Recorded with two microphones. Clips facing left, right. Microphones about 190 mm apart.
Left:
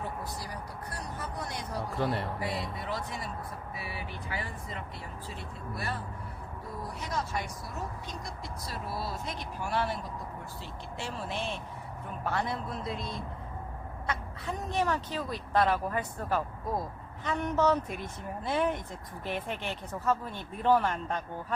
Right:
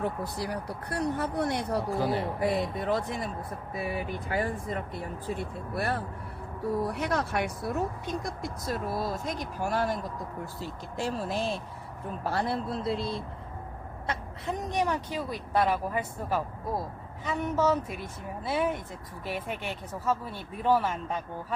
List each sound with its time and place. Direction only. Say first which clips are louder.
0.0 s speech: right 6 dB; 65° right (ahead or behind)
2.0 s a woman's voice: even; centre (ahead or behind)
2.8 s a man's voice: right 7 dB; 55° right (ahead or behind); by 13.2 s 30° right (ahead or behind)
14.4 s a woman's voice: right 2 dB; 15° right (ahead or behind)